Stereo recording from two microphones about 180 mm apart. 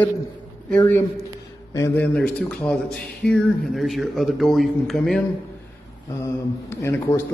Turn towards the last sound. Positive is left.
turn(degrees=15)  # may be behind; listen again after turning